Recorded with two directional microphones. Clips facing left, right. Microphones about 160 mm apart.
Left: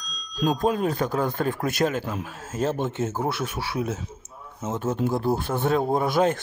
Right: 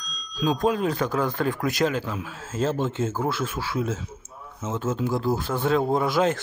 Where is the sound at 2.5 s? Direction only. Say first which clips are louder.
Right 1 dB; 15° left (ahead or behind).